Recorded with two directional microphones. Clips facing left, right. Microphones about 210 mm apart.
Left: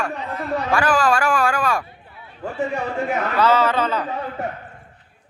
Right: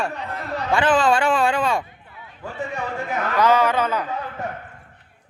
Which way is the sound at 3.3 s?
15° right (ahead or behind).